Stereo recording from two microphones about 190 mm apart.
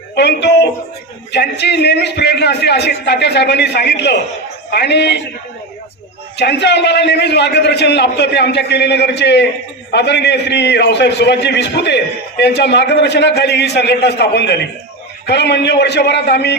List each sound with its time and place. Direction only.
0.2 s a man's voice: 60° left (ahead or behind)
6.3 s a man's voice: 65° left (ahead or behind)